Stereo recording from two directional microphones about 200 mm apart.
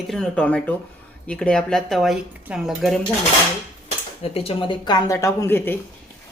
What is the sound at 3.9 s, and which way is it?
Speech, 30° left (ahead or behind).